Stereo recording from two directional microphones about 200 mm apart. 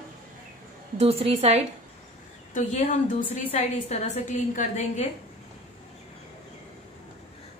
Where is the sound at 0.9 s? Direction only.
30° right (ahead or behind).